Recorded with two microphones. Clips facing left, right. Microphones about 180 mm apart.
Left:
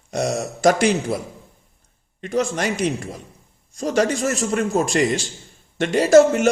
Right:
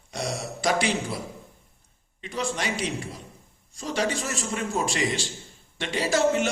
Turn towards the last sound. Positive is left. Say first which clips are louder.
# left 10 dB
turn(degrees=45)  # may be behind; listen again after turning